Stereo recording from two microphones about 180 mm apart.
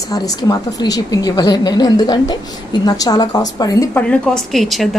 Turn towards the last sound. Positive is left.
turn(degrees=0)  # may be behind; listen again after turning